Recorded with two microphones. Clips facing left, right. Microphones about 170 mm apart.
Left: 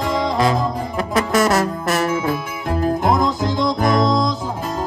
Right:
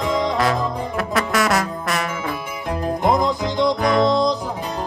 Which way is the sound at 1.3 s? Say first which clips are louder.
Left 4 dB; centre (ahead or behind).